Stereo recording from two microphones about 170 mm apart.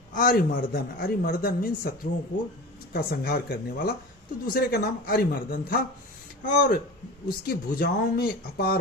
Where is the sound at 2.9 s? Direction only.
60° left (ahead or behind).